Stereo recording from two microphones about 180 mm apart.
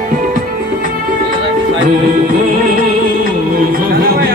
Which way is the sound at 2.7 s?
50° right (ahead or behind).